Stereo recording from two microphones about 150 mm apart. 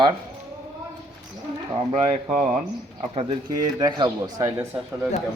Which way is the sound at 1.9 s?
60° right (ahead or behind).